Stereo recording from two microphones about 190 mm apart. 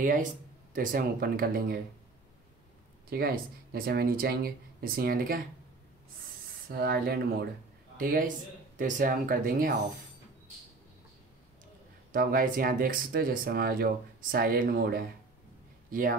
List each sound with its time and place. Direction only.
0.0 s speech: 45° right (ahead or behind)
3.1 s speech: 55° right (ahead or behind)
6.7 s speech: 55° right (ahead or behind)
12.1 s speech: 50° right (ahead or behind)